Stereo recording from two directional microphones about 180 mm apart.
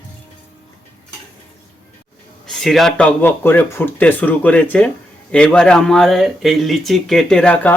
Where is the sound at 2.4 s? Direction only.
Centre (ahead or behind).